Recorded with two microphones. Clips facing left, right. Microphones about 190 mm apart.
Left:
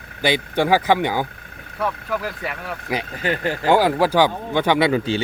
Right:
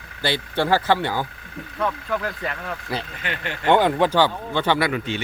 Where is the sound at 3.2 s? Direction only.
40° left (ahead or behind).